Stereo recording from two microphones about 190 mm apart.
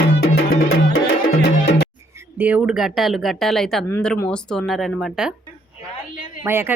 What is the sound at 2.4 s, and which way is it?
Speech, 5° right (ahead or behind).